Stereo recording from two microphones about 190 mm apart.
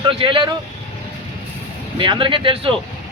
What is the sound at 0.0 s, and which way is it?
Speech, 30° right (ahead or behind).